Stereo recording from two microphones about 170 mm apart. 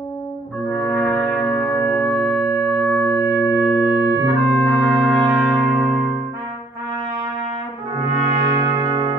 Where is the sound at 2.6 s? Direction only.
Centre (ahead or behind).